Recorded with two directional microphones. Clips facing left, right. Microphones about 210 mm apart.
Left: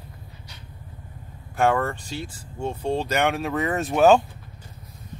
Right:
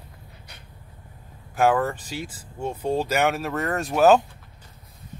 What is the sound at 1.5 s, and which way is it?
Speech, 5° right (ahead or behind).